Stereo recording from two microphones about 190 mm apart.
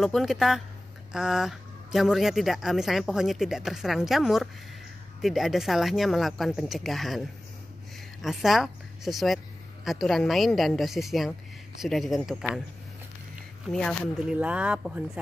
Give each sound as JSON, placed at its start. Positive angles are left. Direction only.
{"t": 0.0, "sound": "a woman's voice", "side_deg": 0}
{"t": 13.7, "sound": "speech", "side_deg": 5}